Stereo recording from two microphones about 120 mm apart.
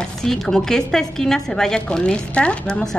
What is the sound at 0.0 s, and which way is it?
A woman's voice, 5° left (ahead or behind).